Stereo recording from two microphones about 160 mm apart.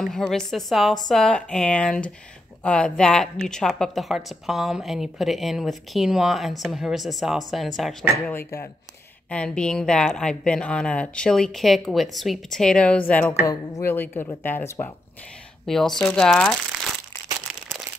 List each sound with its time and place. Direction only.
0.0 s a woman's voice: centre (ahead or behind)
8.3 s a woman's voice: 15° left (ahead or behind)
15.6 s a woman's voice: centre (ahead or behind)